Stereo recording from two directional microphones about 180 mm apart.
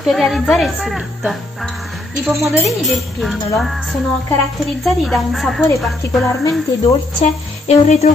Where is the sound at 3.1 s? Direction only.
Centre (ahead or behind).